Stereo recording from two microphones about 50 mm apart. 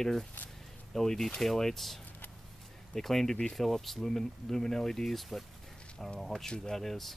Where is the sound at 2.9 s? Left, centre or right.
Centre.